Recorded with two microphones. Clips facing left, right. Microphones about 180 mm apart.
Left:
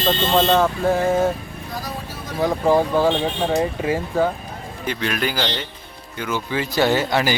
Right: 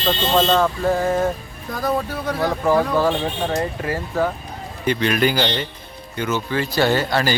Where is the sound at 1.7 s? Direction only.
60° right (ahead or behind).